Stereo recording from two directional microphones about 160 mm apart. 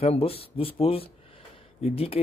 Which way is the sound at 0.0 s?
35° left (ahead or behind).